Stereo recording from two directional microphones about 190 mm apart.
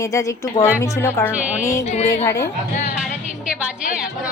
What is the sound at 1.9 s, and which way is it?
Speech, 35° left (ahead or behind).